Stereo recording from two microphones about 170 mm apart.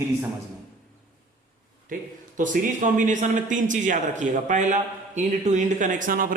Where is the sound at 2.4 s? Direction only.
50° right (ahead or behind).